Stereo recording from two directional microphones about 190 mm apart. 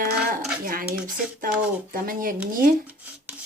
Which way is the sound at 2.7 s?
5° right (ahead or behind).